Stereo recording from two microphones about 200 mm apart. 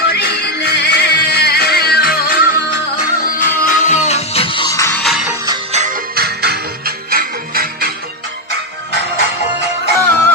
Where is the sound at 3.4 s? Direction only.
40° left (ahead or behind).